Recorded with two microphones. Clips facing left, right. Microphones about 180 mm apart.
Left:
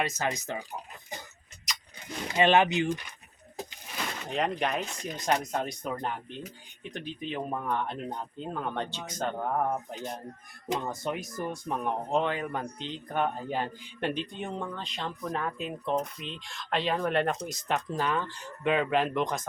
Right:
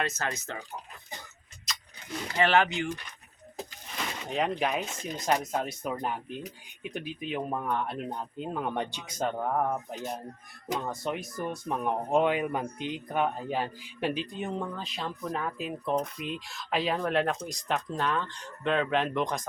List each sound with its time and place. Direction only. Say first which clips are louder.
0.0 s speech: left 2 dB; 15° left (ahead or behind)
2.3 s speech: left 2 dB; 20° left (ahead or behind)
4.3 s speech: right 1 dB; centre (ahead or behind)
12.0 s speech: right 6 dB; 15° right (ahead or behind)